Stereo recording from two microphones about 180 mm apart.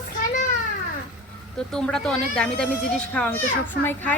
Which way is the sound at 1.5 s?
5° left (ahead or behind).